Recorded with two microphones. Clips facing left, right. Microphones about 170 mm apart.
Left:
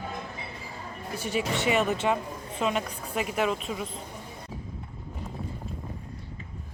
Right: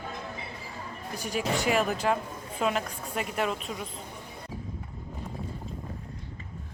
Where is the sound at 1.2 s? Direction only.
40° right (ahead or behind).